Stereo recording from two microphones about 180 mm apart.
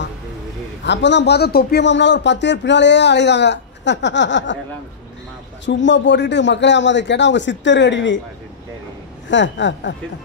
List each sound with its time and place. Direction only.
0.8 s speech: 75° left (ahead or behind)
5.7 s a man's voice: 85° left
9.3 s a man's voice: 85° left